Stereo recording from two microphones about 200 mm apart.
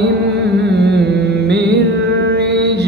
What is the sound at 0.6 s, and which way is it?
Carnatic music, 55° right (ahead or behind).